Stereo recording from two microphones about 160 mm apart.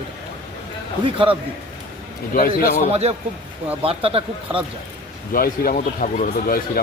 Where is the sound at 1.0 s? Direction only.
35° right (ahead or behind).